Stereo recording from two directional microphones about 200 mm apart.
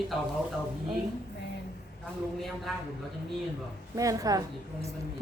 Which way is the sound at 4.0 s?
15° right (ahead or behind).